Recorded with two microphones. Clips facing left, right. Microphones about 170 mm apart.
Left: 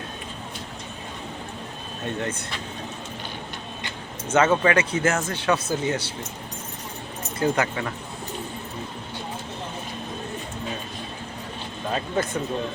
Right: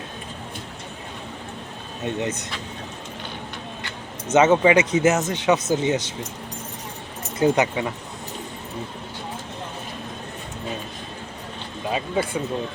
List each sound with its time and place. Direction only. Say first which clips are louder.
2.0 s speech: right 3 dB; 20° right (ahead or behind)
4.4 s speech: right 4 dB; 20° right (ahead or behind)
7.3 s speech: right 4 dB; 20° right (ahead or behind)
11.9 s speech: right 2 dB; 10° right (ahead or behind)